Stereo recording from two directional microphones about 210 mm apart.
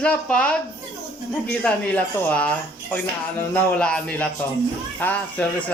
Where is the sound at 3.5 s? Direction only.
5° left (ahead or behind).